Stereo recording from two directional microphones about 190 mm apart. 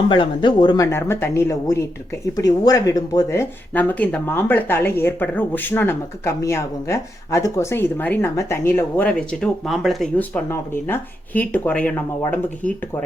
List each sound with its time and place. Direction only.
0.1 s speech: 25° left (ahead or behind)
0.9 s speech: 15° left (ahead or behind)